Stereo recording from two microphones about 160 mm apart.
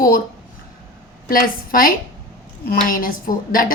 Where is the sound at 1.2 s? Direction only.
60° left (ahead or behind).